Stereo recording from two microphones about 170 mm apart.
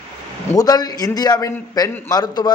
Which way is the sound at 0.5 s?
20° left (ahead or behind).